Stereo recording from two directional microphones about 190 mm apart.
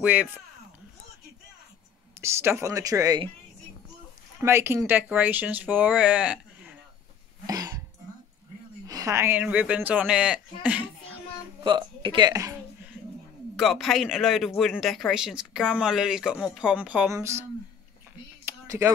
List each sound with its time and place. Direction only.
0.0 s speech: 5° right (ahead or behind)
2.2 s speech: 15° right (ahead or behind)
4.4 s speech: 15° right (ahead or behind)
7.4 s cough: 20° right (ahead or behind)
8.8 s speech: 20° right (ahead or behind)
11.6 s speech: 25° right (ahead or behind)
13.6 s speech: centre (ahead or behind)
18.4 s a sound: 15° right (ahead or behind)